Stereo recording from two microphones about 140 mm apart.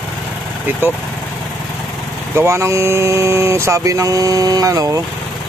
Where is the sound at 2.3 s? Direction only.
20° right (ahead or behind).